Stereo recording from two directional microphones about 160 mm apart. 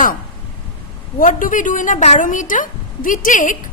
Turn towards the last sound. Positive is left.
turn(degrees=55)  # may be behind; listen again after turning